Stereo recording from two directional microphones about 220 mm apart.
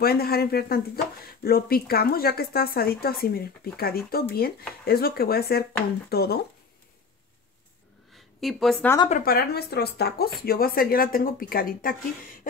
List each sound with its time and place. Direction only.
0.0 s speech: 45° left (ahead or behind)
8.1 s a sound: centre (ahead or behind)
9.1 s speech: 40° left (ahead or behind)